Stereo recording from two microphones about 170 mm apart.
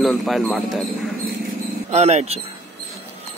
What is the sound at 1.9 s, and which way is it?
Speech, 40° right (ahead or behind).